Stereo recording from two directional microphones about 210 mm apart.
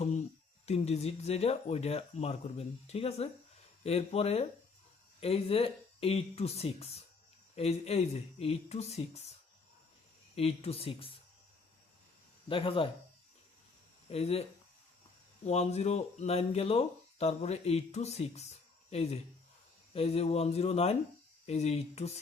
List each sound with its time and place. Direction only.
0.6 s speech: 30° left (ahead or behind)
10.3 s speech: 30° left (ahead or behind)
12.5 s speech: 25° left (ahead or behind)
14.1 s speech: 30° left (ahead or behind)
15.4 s speech: 30° left (ahead or behind)